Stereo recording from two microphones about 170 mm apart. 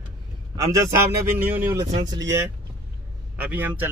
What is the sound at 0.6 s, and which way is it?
A man's voice, 20° right (ahead or behind).